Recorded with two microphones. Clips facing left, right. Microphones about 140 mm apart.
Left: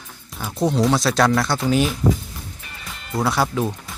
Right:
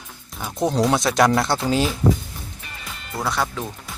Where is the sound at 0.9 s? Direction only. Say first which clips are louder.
Even; 15° right (ahead or behind).